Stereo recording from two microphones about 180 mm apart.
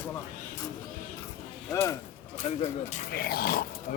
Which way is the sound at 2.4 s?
35° left (ahead or behind).